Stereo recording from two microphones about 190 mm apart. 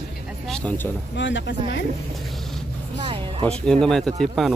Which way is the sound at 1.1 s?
70° left (ahead or behind).